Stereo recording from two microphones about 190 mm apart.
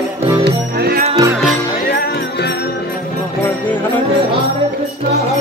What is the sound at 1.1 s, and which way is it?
Music, 15° right (ahead or behind).